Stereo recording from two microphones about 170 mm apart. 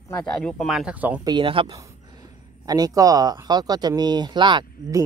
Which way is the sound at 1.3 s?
30° right (ahead or behind).